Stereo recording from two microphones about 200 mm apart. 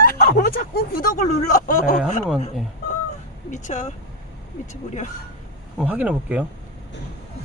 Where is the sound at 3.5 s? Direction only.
35° left (ahead or behind).